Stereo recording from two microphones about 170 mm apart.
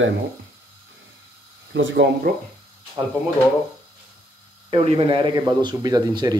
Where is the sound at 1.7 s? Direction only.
90° right.